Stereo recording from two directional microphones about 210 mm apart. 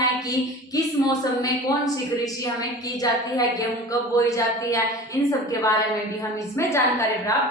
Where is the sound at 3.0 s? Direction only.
15° left (ahead or behind).